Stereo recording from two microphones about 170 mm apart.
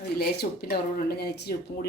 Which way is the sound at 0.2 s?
65° left (ahead or behind).